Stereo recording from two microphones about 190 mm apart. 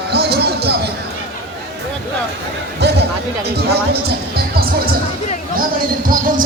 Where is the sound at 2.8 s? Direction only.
60° right (ahead or behind).